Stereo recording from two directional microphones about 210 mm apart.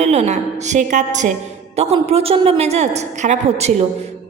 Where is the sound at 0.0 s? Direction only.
30° right (ahead or behind).